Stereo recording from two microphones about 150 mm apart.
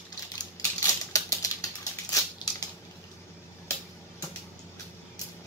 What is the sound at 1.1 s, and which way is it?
Typewriter, 20° left (ahead or behind).